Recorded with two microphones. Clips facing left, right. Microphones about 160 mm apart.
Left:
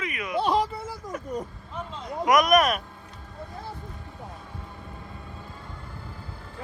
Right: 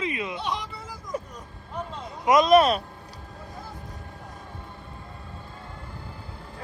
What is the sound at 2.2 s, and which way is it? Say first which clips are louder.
Speech: right 3 dB; 25° right (ahead or behind).